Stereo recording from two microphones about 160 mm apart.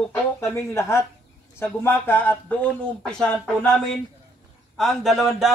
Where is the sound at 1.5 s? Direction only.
15° left (ahead or behind).